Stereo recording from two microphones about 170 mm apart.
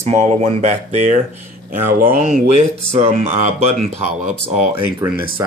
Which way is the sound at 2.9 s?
35° right (ahead or behind).